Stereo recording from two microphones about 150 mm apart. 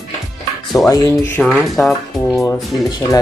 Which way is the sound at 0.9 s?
20° left (ahead or behind).